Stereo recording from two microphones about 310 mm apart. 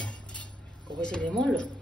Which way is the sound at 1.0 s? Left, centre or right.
Centre.